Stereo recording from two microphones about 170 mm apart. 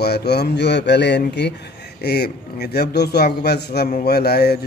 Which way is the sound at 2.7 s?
75° left (ahead or behind).